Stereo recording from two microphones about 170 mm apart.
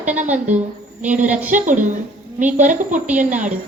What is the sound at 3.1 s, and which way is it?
Speech, 50° right (ahead or behind).